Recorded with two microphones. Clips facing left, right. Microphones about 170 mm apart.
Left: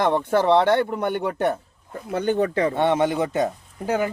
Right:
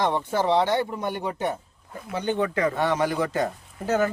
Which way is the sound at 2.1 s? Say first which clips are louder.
Left 4 dB; 45° left (ahead or behind).